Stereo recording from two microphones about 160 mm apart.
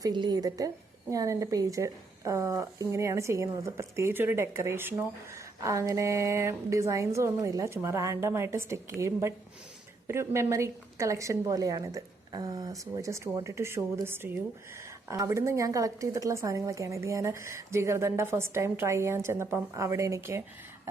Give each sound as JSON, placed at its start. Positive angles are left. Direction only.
{"t": 0.0, "sound": "a woman's voice", "side_deg": -25}